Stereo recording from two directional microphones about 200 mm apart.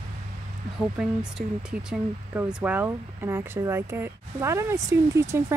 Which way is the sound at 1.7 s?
5° right (ahead or behind).